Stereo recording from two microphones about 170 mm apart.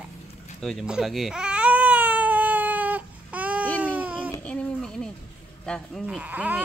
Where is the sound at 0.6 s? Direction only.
Centre (ahead or behind).